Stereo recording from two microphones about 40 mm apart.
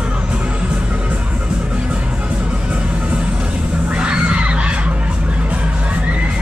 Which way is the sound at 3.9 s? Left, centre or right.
Right.